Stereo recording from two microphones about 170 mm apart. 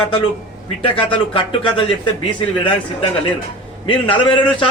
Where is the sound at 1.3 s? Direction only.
30° left (ahead or behind).